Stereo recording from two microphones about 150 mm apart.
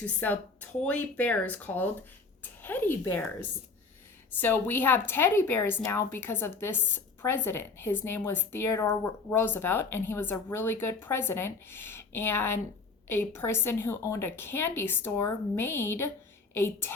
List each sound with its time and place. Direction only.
0.0 s a woman's voice: 10° left (ahead or behind)